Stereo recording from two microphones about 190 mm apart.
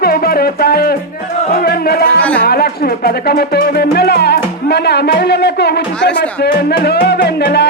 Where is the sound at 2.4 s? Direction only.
55° left (ahead or behind).